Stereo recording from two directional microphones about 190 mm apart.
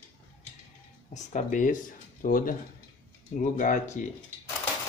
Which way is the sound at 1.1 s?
40° left (ahead or behind).